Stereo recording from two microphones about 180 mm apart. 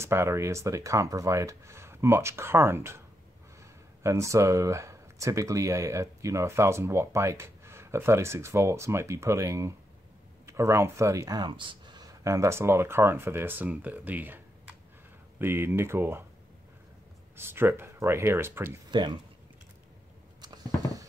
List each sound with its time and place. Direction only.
0.0 s speech: 15° right (ahead or behind)
4.0 s speech: 15° right (ahead or behind)
17.4 s speech: 15° right (ahead or behind)
18.9 s speech: 25° right (ahead or behind)
20.4 s a sound: 20° right (ahead or behind)